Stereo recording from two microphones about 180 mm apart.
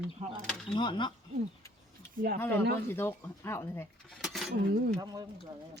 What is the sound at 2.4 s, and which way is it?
Speech, 10° left (ahead or behind).